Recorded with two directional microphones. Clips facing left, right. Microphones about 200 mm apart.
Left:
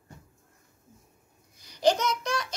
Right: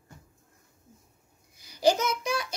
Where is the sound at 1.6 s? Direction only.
5° right (ahead or behind).